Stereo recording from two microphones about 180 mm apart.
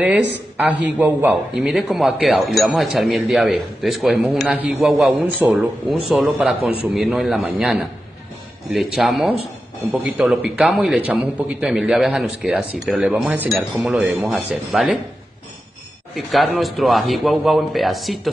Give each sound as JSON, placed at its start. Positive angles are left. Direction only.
{"t": 0.8, "sound": "a man's voice", "side_deg": -5}
{"t": 16.3, "sound": "a man's voice", "side_deg": 0}